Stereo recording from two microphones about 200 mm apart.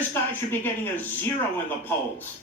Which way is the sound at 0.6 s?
10° left (ahead or behind).